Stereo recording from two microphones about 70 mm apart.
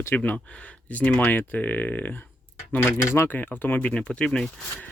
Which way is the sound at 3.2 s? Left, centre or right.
Left.